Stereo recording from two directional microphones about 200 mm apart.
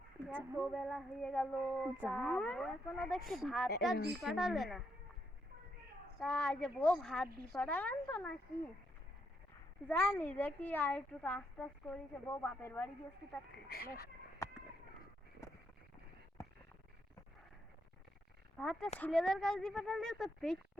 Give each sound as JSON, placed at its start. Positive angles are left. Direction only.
{"t": 0.6, "sound": "female singing", "side_deg": 0}
{"t": 6.1, "sound": "female singing", "side_deg": 5}
{"t": 9.9, "sound": "a woman's voice", "side_deg": 10}
{"t": 13.7, "sound": "speech", "side_deg": 50}
{"t": 18.5, "sound": "speech", "side_deg": 5}
{"t": 18.9, "sound": "female singing", "side_deg": 5}